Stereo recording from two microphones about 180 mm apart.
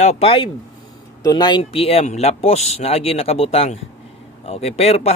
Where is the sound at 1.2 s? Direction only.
20° left (ahead or behind).